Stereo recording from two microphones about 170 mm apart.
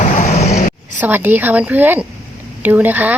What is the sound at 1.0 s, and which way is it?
Speech, 10° right (ahead or behind).